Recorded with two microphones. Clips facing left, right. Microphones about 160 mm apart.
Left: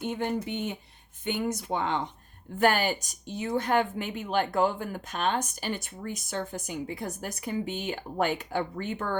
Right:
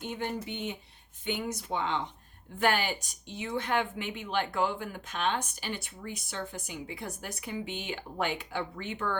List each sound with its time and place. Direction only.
0.0 s a woman's voice: 50° left (ahead or behind)